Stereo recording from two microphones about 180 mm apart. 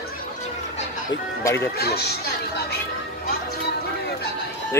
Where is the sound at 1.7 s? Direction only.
60° left (ahead or behind).